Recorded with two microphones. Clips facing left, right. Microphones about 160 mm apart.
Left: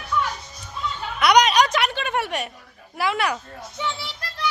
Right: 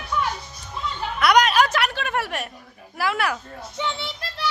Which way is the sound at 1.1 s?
Centre (ahead or behind).